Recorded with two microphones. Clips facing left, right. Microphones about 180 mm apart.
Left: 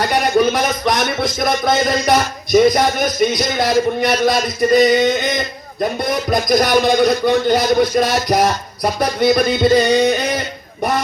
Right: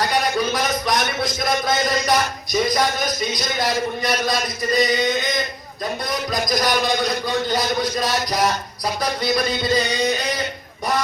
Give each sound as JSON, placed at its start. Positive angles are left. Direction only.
{"t": 0.1, "sound": "a man's voice", "side_deg": 60}